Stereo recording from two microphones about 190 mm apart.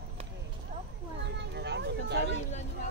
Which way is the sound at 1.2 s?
65° right (ahead or behind).